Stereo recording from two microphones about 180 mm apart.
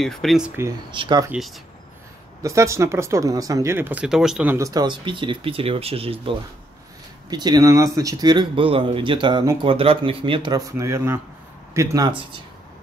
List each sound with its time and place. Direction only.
0.0 s speech: centre (ahead or behind)
0.9 s speech: 25° right (ahead or behind)
2.4 s speech: 15° right (ahead or behind)
4.6 s speech: 20° right (ahead or behind)